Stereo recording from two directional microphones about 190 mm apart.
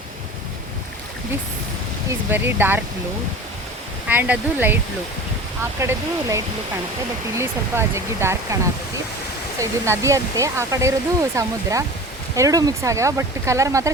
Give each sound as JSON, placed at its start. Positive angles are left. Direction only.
{"t": 2.0, "sound": "speech", "side_deg": -10}
{"t": 4.1, "sound": "speech", "side_deg": -10}
{"t": 5.8, "sound": "speech", "side_deg": -15}
{"t": 9.6, "sound": "speech", "side_deg": -15}